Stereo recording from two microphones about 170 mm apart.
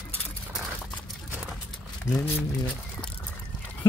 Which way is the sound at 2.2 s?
10° left (ahead or behind).